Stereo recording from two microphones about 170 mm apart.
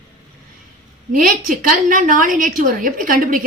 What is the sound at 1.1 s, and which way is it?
A woman's voice, 55° right (ahead or behind).